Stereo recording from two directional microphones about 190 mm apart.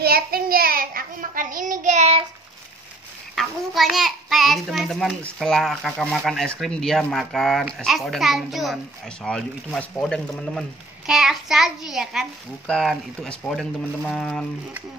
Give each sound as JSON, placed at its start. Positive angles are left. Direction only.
{"t": 0.0, "sound": "child singing", "side_deg": -55}
{"t": 3.3, "sound": "a child's voice", "side_deg": 0}